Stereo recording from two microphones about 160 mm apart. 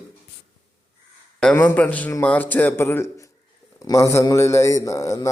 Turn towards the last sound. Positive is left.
turn(degrees=20)  # may be behind; listen again after turning